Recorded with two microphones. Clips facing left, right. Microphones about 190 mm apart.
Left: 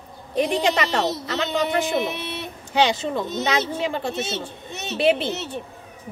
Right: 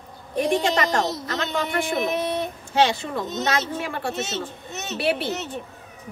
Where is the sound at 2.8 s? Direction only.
20° left (ahead or behind).